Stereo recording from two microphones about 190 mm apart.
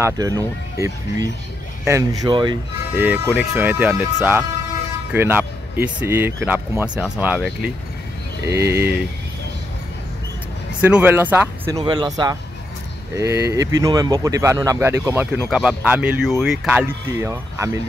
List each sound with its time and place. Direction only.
0.0 s speech: 20° right (ahead or behind)
8.5 s speech: 15° right (ahead or behind)
10.8 s speech: 10° right (ahead or behind)
11.7 s speech: 25° right (ahead or behind)